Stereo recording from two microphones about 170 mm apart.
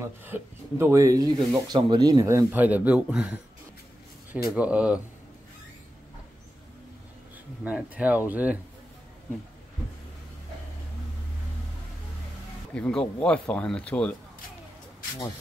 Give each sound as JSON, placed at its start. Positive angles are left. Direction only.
{"t": 0.0, "sound": "speech", "side_deg": -15}
{"t": 4.6, "sound": "speech", "side_deg": -5}
{"t": 7.6, "sound": "speech", "side_deg": -10}
{"t": 12.7, "sound": "speech", "side_deg": 5}